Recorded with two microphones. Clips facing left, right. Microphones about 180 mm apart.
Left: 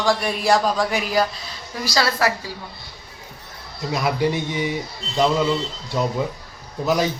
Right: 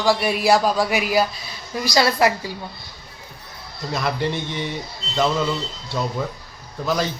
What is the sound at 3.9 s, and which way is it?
Speech, 10° left (ahead or behind).